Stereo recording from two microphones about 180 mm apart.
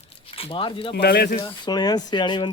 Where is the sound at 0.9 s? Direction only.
65° left (ahead or behind).